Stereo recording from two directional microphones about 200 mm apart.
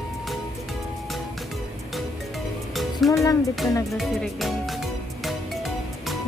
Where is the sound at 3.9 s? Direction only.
Centre (ahead or behind).